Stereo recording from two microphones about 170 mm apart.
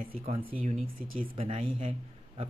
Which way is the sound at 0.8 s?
35° right (ahead or behind).